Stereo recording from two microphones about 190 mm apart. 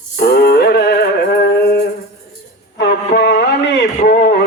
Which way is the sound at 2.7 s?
60° left (ahead or behind).